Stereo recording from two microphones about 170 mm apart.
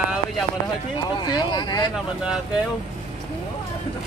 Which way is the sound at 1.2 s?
25° left (ahead or behind).